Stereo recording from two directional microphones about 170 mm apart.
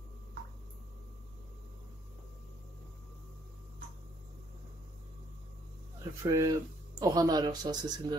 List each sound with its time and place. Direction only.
6.2 s a man's voice: 20° right (ahead or behind)